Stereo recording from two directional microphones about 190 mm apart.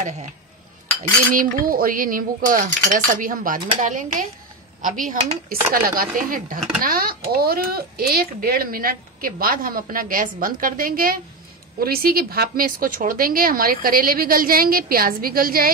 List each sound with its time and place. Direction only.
1.3 s speech: 45° right (ahead or behind)